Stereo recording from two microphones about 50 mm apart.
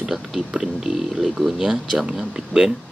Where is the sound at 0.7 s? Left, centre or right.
Centre.